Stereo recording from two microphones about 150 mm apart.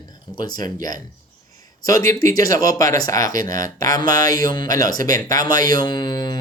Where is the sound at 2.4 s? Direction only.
25° left (ahead or behind).